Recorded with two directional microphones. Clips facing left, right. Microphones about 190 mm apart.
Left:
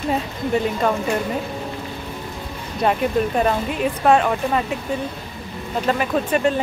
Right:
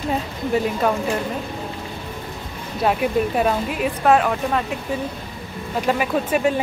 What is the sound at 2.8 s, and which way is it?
Speech, 5° right (ahead or behind).